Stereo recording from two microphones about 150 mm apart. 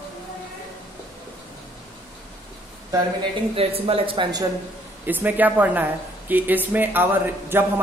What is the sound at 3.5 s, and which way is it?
Speech, 40° right (ahead or behind).